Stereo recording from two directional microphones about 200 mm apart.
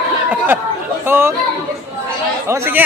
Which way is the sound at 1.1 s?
10° right (ahead or behind).